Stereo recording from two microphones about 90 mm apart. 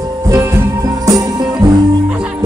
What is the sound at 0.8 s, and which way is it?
Music, 45° right (ahead or behind).